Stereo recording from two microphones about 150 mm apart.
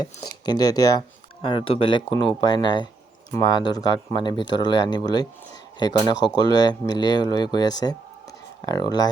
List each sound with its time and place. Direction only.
0.0 s speech: 25° left (ahead or behind)
1.5 s speech: 35° left (ahead or behind)